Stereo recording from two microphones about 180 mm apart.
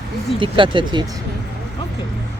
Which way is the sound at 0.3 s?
30° right (ahead or behind).